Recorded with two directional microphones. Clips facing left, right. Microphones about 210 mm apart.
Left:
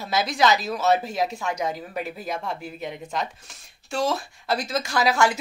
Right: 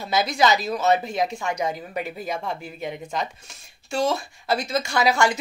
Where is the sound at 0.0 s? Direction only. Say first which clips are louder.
Right 1 dB; centre (ahead or behind).